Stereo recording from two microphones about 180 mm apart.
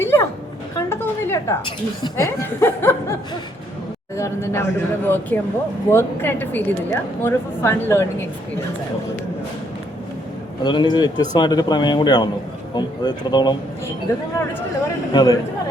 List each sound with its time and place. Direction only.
0.0 s a sound: 15° left (ahead or behind)
2.1 s a woman's voice: 15° left (ahead or behind)
4.2 s a woman's voice: 15° left (ahead or behind)
10.6 s speech: 25° left (ahead or behind)
15.1 s speech: 20° left (ahead or behind)